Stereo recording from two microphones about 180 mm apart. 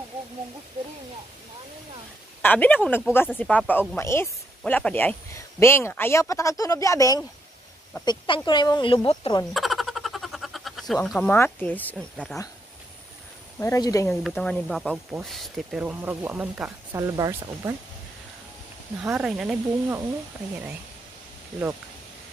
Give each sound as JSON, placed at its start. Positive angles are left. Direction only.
{"t": 2.4, "sound": "speech", "side_deg": 10}
{"t": 9.5, "sound": "a sound", "side_deg": 0}
{"t": 13.6, "sound": "speech", "side_deg": 15}
{"t": 14.2, "sound": "speech", "side_deg": 5}
{"t": 19.0, "sound": "speech", "side_deg": -5}